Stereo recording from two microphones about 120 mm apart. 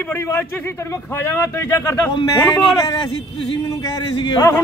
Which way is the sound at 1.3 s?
25° left (ahead or behind).